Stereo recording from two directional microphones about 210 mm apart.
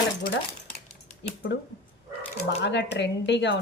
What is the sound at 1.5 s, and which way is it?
Speech, 55° left (ahead or behind).